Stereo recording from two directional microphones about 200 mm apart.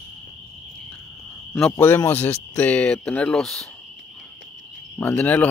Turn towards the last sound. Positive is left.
turn(degrees=10)  # may be behind; listen again after turning